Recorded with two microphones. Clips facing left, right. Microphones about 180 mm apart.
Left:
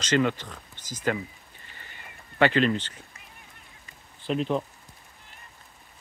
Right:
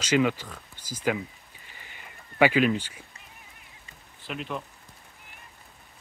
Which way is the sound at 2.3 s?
10° right (ahead or behind).